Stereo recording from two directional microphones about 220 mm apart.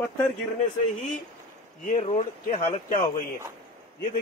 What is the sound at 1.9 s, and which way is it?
Speech, 25° left (ahead or behind).